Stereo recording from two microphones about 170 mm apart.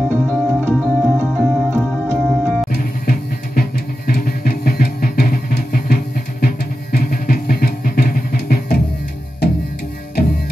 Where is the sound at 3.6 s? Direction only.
65° left (ahead or behind).